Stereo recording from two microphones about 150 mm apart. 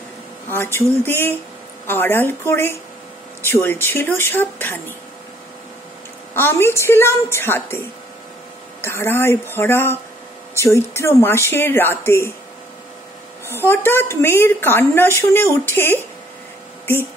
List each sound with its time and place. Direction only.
0.5 s a woman's voice: 15° left (ahead or behind)
6.3 s a woman's voice: 15° left (ahead or behind)
8.8 s a woman's voice: 15° left (ahead or behind)
13.5 s a woman's voice: 15° left (ahead or behind)